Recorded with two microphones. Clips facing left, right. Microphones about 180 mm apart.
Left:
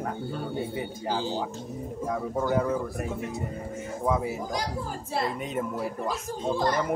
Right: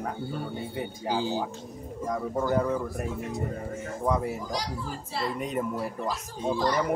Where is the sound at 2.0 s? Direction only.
Centre (ahead or behind).